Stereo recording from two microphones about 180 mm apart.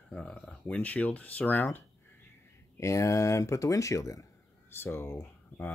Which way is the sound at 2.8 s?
15° left (ahead or behind).